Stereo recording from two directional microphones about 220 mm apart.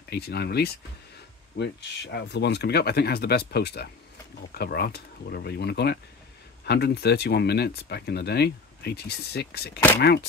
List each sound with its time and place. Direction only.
0.1 s speech: 45° left (ahead or behind)